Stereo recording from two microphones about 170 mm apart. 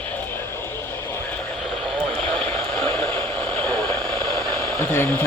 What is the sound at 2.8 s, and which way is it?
Vehicle, 15° left (ahead or behind).